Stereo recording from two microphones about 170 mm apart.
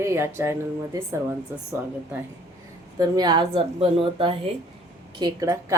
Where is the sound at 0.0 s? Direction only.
15° right (ahead or behind).